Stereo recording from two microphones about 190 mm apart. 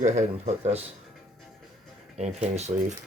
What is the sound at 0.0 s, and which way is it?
Speech, 40° right (ahead or behind).